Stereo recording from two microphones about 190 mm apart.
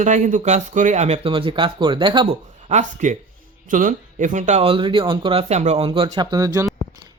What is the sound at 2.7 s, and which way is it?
Speech, 40° right (ahead or behind).